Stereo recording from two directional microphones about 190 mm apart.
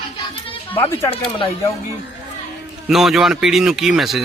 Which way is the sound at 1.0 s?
25° left (ahead or behind).